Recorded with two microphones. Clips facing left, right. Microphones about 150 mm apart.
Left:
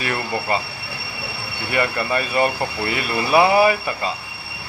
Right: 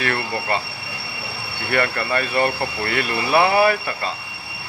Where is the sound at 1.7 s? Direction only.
15° left (ahead or behind).